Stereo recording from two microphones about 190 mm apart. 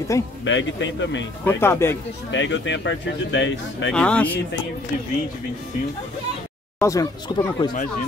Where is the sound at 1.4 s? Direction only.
10° left (ahead or behind).